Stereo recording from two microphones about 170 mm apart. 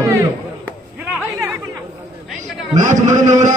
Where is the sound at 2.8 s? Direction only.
45° right (ahead or behind).